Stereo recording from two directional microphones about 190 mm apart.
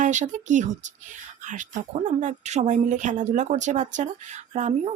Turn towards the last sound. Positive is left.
turn(degrees=-35)  # may be behind; listen again after turning